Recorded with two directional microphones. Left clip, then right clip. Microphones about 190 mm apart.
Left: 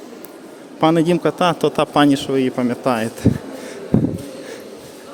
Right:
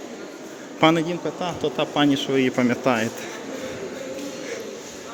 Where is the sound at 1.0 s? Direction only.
50° left (ahead or behind); by 3.1 s 20° left (ahead or behind).